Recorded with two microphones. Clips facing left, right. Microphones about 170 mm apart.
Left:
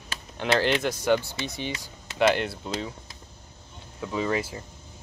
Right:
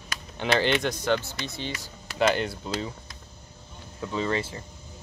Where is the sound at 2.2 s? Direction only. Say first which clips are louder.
Left 1 dB; 5° left (ahead or behind).